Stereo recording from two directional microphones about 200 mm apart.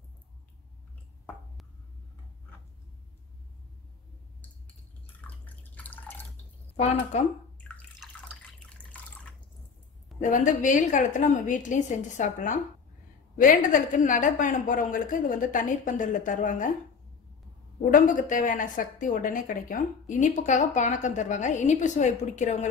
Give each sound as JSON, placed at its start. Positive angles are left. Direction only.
{"t": 5.0, "sound": "drip", "side_deg": 10}
{"t": 6.8, "sound": "speech", "side_deg": 35}
{"t": 7.6, "sound": "bathtub", "side_deg": 5}
{"t": 10.2, "sound": "speech", "side_deg": 40}
{"t": 17.9, "sound": "speech", "side_deg": 40}